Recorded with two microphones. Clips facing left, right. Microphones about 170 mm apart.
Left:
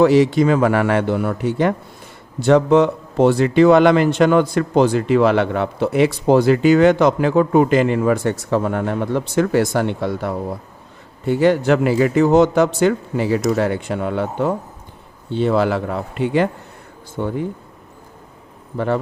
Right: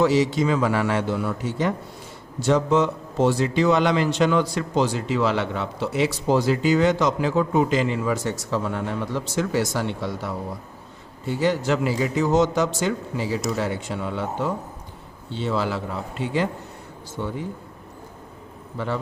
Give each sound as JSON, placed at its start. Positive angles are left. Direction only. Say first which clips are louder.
{"t": 0.0, "sound": "speech", "louder": "left 7 dB", "side_deg": 60}